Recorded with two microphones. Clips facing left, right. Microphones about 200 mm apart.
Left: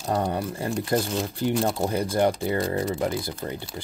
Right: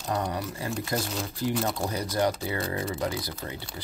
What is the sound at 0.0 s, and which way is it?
Speech, 30° left (ahead or behind).